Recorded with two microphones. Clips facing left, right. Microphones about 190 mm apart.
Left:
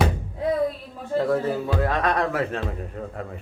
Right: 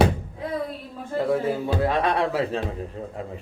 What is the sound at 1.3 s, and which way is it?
Speech, 10° right (ahead or behind).